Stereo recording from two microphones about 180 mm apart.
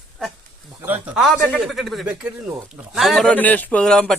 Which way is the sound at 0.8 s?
10° right (ahead or behind).